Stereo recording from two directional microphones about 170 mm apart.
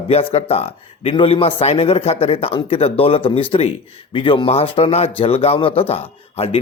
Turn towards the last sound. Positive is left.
turn(degrees=35)  # may be behind; listen again after turning